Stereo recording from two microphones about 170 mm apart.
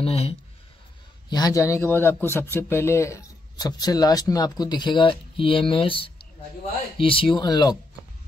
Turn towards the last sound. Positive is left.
turn(degrees=25)  # may be behind; listen again after turning